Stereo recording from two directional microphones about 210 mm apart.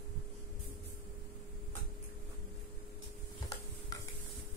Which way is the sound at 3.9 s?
15° left (ahead or behind).